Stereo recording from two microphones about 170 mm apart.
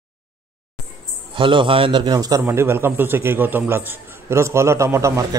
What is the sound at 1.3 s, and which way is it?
A man's voice, 30° right (ahead or behind).